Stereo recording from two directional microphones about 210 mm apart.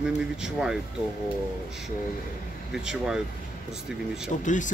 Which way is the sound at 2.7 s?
Centre (ahead or behind).